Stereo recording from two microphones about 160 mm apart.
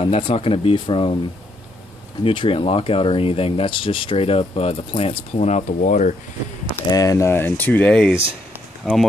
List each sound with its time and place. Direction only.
0.0 s speech: 35° left (ahead or behind)
2.2 s speech: 35° left (ahead or behind); by 6.1 s 55° left (ahead or behind)
6.9 s speech: 20° left (ahead or behind); by 9.0 s centre (ahead or behind)